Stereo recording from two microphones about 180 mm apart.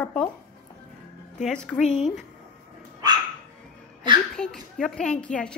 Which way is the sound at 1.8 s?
40° left (ahead or behind).